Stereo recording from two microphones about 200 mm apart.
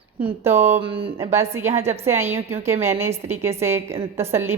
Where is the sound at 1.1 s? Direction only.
15° right (ahead or behind).